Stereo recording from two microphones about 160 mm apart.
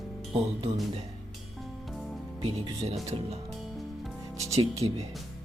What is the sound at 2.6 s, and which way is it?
Speech, 40° right (ahead or behind).